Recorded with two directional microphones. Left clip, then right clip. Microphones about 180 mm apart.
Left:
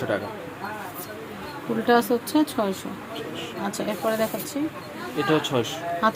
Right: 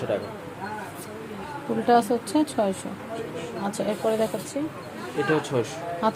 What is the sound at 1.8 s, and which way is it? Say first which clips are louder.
Speech: even; 5° right (ahead or behind).